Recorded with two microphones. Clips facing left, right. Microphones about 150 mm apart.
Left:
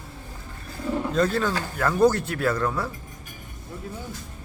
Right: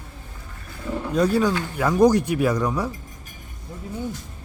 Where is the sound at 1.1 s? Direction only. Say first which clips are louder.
Right 5 dB; 10° right (ahead or behind).